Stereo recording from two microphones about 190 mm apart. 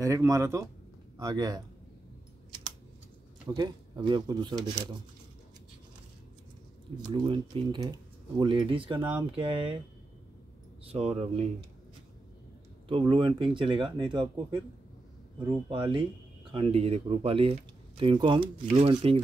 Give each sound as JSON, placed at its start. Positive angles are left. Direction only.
{"t": 0.0, "sound": "speech", "side_deg": -15}
{"t": 3.4, "sound": "speech", "side_deg": -20}
{"t": 7.1, "sound": "speech", "side_deg": -25}
{"t": 10.9, "sound": "speech", "side_deg": -35}
{"t": 13.1, "sound": "speech", "side_deg": -25}